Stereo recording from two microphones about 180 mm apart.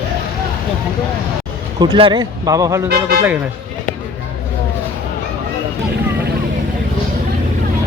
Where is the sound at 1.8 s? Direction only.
25° right (ahead or behind).